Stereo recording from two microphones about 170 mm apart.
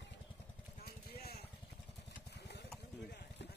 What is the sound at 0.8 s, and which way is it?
Vehicle, 65° left (ahead or behind).